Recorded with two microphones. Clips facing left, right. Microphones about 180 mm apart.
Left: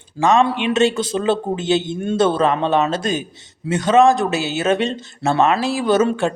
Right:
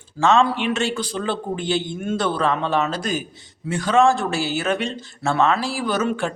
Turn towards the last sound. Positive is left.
turn(degrees=25)  # may be behind; listen again after turning